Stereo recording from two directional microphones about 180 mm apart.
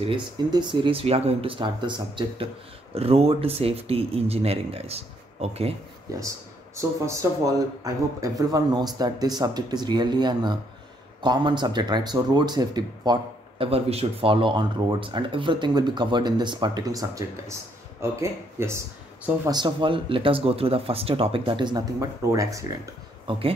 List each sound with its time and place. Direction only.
0.0 s speech: 25° right (ahead or behind)
6.1 s speech: 20° right (ahead or behind)
23.3 s speech: 30° right (ahead or behind)